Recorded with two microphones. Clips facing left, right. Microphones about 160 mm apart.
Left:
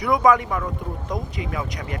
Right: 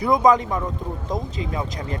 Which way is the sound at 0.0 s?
20° right (ahead or behind).